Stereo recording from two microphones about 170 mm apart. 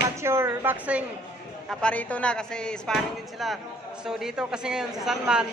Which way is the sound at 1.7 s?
5° left (ahead or behind).